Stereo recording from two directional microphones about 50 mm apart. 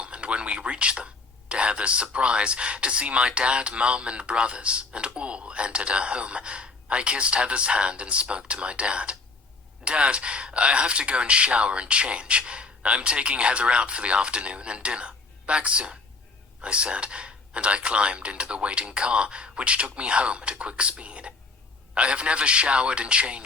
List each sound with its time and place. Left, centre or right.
0.0 s speech: right